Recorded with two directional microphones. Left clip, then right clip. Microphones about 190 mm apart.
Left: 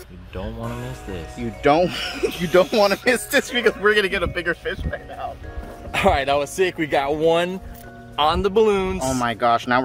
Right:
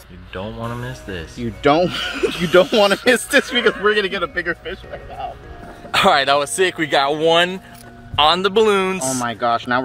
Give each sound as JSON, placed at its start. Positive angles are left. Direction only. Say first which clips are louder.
{"t": 0.3, "sound": "speech", "louder": "right 4 dB", "side_deg": 0}
{"t": 1.4, "sound": "speech", "louder": "right 2 dB", "side_deg": -15}
{"t": 3.8, "sound": "speech", "louder": "right 1 dB", "side_deg": -5}
{"t": 5.9, "sound": "speech", "louder": "right 5 dB", "side_deg": 0}